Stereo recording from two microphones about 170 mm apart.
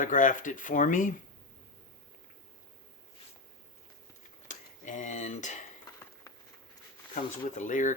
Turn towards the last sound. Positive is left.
turn(degrees=50)  # may be behind; listen again after turning